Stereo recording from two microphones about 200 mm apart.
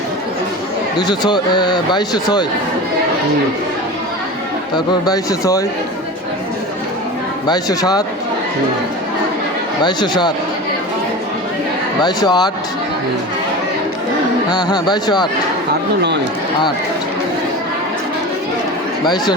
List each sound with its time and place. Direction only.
0.9 s a man's voice: 20° left (ahead or behind)
4.7 s speech: 20° left (ahead or behind)
7.4 s a man's voice: 20° left (ahead or behind)
9.8 s a man's voice: 20° left (ahead or behind)
12.0 s a man's voice: 20° left (ahead or behind)
14.5 s a man's voice: 20° left (ahead or behind)